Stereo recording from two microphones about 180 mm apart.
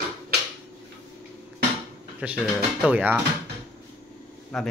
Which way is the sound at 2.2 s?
5° right (ahead or behind).